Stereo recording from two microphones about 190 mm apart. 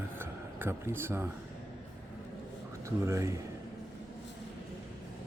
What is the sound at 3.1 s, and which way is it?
Speech, 15° right (ahead or behind).